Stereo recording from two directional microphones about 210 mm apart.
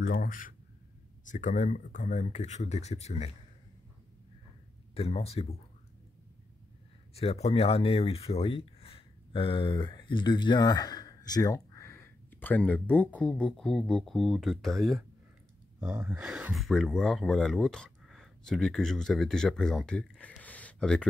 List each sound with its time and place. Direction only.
0.0 s speech: 40° left (ahead or behind)
4.9 s speech: 30° left (ahead or behind)
7.2 s speech: 30° left (ahead or behind); by 21.1 s 5° left (ahead or behind)